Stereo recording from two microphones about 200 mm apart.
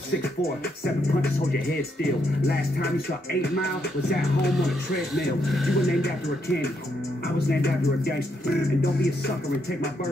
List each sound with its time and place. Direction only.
2.4 s music: 50° left (ahead or behind)
5.5 s speech: centre (ahead or behind)
6.0 s speech: 55° left (ahead or behind)